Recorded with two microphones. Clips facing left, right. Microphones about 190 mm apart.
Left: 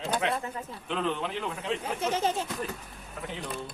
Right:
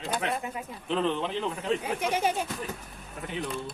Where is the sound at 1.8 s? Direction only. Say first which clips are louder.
Right 1 dB; 10° right (ahead or behind).